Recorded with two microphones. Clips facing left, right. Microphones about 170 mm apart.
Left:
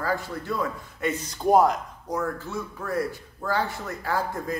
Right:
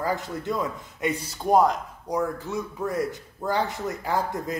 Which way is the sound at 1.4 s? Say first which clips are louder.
Left 1 dB; centre (ahead or behind).